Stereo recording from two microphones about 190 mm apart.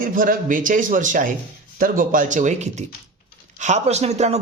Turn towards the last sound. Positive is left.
turn(degrees=-35)  # may be behind; listen again after turning